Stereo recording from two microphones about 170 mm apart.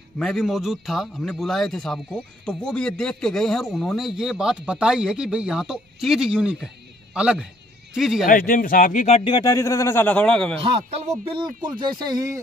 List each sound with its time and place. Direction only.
0.2 s a man's voice: centre (ahead or behind)
8.3 s a man's voice: 50° left (ahead or behind); by 10.5 s 5° left (ahead or behind)
10.6 s speech: 35° right (ahead or behind)